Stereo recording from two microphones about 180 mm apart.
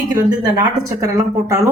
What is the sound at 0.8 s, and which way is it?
Speech, 15° right (ahead or behind).